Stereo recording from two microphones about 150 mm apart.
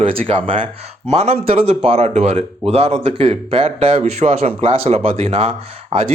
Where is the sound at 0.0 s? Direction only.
40° right (ahead or behind).